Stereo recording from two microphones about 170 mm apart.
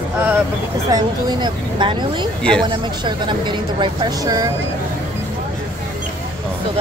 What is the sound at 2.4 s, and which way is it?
Speech, 5° left (ahead or behind).